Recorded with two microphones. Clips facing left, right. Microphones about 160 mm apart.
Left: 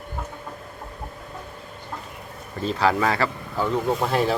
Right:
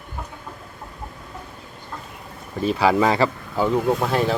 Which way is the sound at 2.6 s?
10° right (ahead or behind).